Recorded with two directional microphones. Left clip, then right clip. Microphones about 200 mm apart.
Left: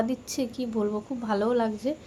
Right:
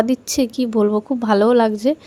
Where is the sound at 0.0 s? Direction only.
40° right (ahead or behind).